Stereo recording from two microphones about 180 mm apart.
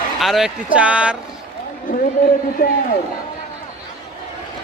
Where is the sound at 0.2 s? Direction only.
Centre (ahead or behind).